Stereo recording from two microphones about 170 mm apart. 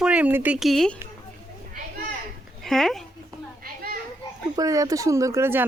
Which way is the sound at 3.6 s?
60° right (ahead or behind).